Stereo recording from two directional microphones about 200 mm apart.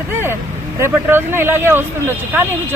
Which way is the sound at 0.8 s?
10° right (ahead or behind).